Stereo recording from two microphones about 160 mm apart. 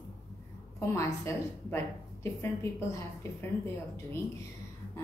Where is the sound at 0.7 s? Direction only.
15° left (ahead or behind).